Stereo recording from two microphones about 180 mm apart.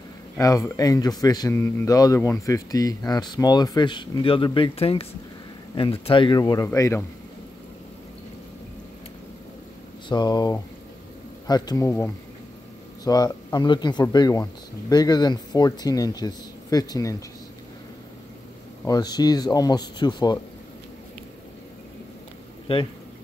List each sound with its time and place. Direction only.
0.4 s a man's voice: 20° left (ahead or behind)
10.0 s a man's voice: 25° left (ahead or behind)
18.9 s a man's voice: 20° left (ahead or behind)
22.7 s speech: 30° left (ahead or behind)